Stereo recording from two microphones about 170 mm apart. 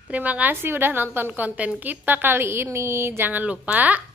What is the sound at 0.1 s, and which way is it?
A woman's voice, 10° right (ahead or behind).